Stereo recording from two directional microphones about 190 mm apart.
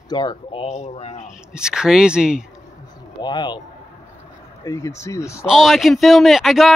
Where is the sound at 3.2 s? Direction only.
25° left (ahead or behind).